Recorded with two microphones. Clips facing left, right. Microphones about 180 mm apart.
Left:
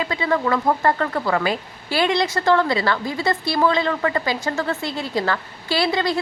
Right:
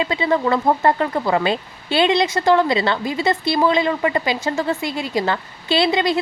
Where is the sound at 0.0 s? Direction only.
20° right (ahead or behind).